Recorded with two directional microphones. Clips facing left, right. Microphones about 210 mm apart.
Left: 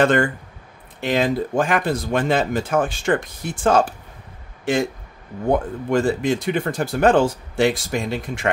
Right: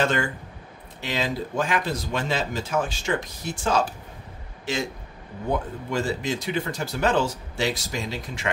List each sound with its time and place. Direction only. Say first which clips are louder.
0.0 s speech: left 7 dB; 55° left (ahead or behind)